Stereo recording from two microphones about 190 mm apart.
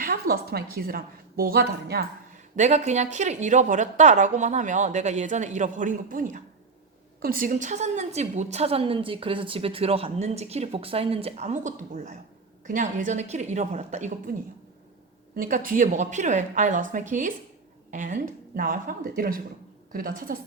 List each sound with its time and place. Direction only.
0.0 s a woman's voice: 50° right (ahead or behind)
2.6 s a woman's voice: 40° right (ahead or behind)
14.3 s a woman's voice: 50° right (ahead or behind)